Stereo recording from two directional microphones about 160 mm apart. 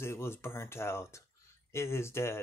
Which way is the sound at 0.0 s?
15° left (ahead or behind).